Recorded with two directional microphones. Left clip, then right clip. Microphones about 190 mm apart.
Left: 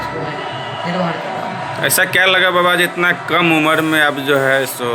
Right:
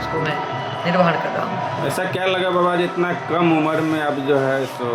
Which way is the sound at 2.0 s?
Centre (ahead or behind).